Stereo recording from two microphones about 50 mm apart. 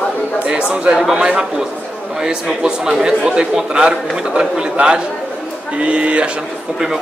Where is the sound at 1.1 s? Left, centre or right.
Right.